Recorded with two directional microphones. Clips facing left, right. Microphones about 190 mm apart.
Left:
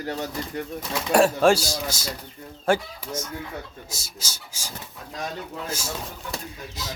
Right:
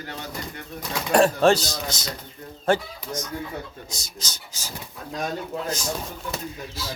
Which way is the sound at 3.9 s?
5° left (ahead or behind).